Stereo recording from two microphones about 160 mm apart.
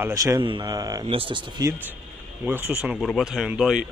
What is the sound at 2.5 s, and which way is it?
A man's voice, 10° right (ahead or behind).